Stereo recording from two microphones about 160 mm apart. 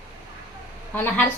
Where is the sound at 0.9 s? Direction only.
10° left (ahead or behind).